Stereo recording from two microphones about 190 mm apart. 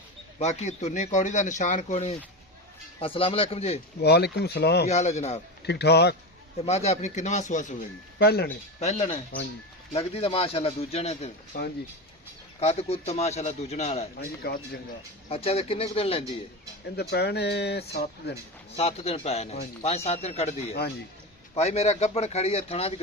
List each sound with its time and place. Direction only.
0.3 s speech: 35° left (ahead or behind)
4.0 s speech: 60° left (ahead or behind)
4.9 s speech: 35° left (ahead or behind)
5.6 s speech: 60° left (ahead or behind)
6.6 s speech: 35° left (ahead or behind)
8.2 s speech: 55° left (ahead or behind)
8.8 s speech: 35° left (ahead or behind)
11.5 s speech: 45° left (ahead or behind)
12.5 s speech: 35° left (ahead or behind)
14.2 s speech: 55° left (ahead or behind)
15.3 s speech: 30° left (ahead or behind)
17.0 s speech: 60° left (ahead or behind)
18.8 s speech: 30° left (ahead or behind)